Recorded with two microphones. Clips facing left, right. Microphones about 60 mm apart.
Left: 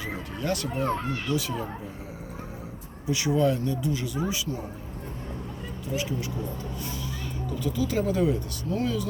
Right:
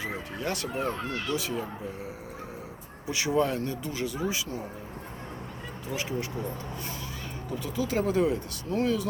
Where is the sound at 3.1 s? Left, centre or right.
Right.